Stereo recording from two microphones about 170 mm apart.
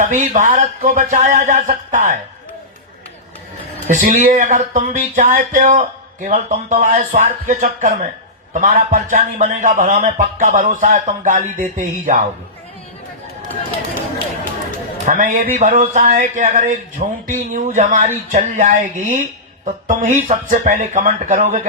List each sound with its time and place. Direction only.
0.0 s speech: 50° right (ahead or behind)
3.8 s speech: 45° right (ahead or behind)
15.0 s speech: 50° right (ahead or behind)